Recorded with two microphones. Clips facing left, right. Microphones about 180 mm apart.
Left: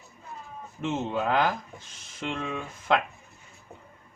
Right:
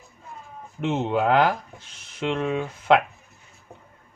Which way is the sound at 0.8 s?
65° right (ahead or behind).